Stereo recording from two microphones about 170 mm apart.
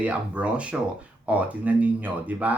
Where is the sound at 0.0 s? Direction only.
5° right (ahead or behind).